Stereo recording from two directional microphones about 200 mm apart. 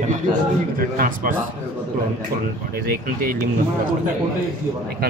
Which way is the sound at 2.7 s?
45° right (ahead or behind).